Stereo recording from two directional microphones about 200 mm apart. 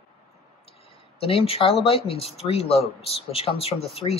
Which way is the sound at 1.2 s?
30° left (ahead or behind).